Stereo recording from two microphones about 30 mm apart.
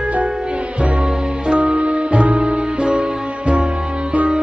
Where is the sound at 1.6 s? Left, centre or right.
Right.